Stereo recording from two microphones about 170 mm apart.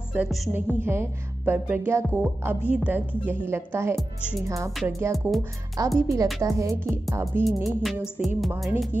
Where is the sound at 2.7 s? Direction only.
5° right (ahead or behind).